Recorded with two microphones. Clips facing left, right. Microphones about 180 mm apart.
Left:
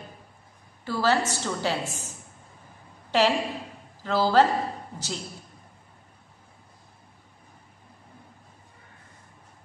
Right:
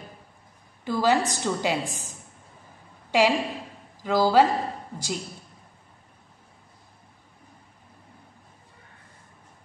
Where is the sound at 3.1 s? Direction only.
10° right (ahead or behind).